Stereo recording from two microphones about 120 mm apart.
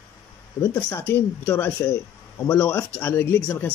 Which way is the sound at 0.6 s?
20° left (ahead or behind).